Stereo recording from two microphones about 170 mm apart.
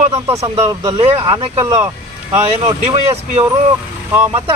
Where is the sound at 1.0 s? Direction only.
30° right (ahead or behind).